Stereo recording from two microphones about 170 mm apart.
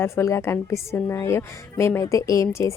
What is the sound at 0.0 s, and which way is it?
A woman's voice, 15° left (ahead or behind).